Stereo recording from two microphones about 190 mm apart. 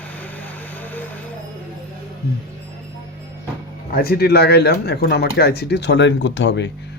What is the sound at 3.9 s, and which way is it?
Speech, 55° left (ahead or behind).